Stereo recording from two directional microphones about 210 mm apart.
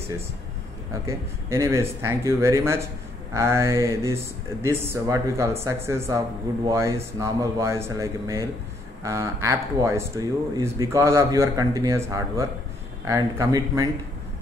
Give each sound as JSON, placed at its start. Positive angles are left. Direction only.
{"t": 1.0, "sound": "speech", "side_deg": -15}